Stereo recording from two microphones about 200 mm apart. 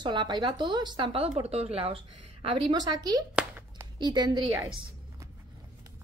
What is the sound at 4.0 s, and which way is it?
Speech, 20° right (ahead or behind).